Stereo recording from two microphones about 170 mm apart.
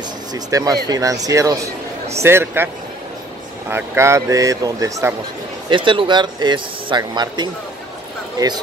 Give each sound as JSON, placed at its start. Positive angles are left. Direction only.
{"t": 0.3, "sound": "a man's voice", "side_deg": -20}